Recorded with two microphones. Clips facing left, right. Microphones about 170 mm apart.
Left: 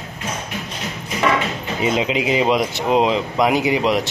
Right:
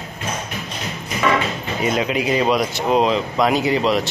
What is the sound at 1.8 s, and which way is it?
Speech, 20° left (ahead or behind).